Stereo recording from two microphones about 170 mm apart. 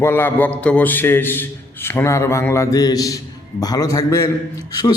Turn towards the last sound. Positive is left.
turn(degrees=20)  # may be behind; listen again after turning